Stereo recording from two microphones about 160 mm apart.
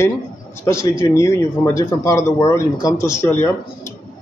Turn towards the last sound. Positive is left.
turn(degrees=15)  # may be behind; listen again after turning